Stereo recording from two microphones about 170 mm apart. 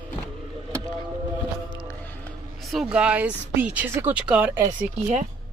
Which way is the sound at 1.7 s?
25° left (ahead or behind).